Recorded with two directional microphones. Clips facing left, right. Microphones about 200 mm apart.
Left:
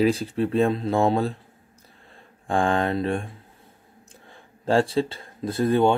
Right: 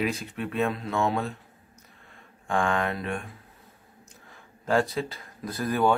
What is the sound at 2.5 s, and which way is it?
Speech, 30° left (ahead or behind).